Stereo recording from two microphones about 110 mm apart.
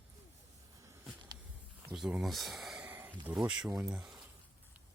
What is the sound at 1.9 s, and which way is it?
Speech, 5° right (ahead or behind).